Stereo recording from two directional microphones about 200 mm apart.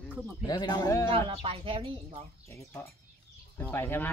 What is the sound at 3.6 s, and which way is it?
Speech, 10° left (ahead or behind).